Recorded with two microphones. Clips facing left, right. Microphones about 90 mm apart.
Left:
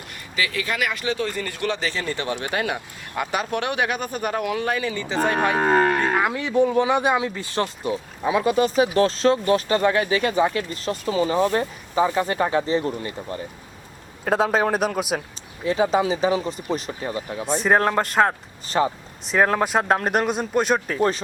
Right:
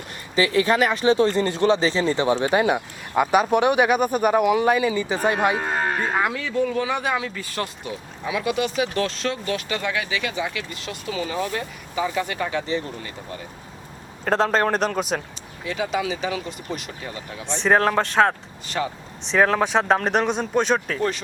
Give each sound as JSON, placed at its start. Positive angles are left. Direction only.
{"t": 0.3, "sound": "speech", "side_deg": -30}
{"t": 5.5, "sound": "speech", "side_deg": 65}
{"t": 6.4, "sound": "speech", "side_deg": 20}
{"t": 7.9, "sound": "speech", "side_deg": 35}
{"t": 14.3, "sound": "a man's voice", "side_deg": 5}
{"t": 15.6, "sound": "speech", "side_deg": 35}
{"t": 17.6, "sound": "speech", "side_deg": 5}
{"t": 18.8, "sound": "speech", "side_deg": 30}
{"t": 19.2, "sound": "speech", "side_deg": 5}